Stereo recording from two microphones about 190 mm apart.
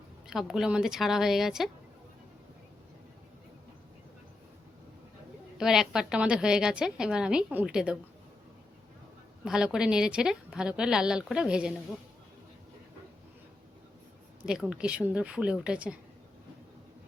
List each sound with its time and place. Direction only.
0.3 s a woman's voice: centre (ahead or behind)
5.5 s a woman's voice: 5° right (ahead or behind)
9.4 s a woman's voice: 5° right (ahead or behind)
14.4 s a woman's voice: 5° right (ahead or behind)